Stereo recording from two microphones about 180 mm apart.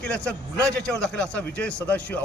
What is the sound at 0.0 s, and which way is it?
A man's voice, 5° left (ahead or behind).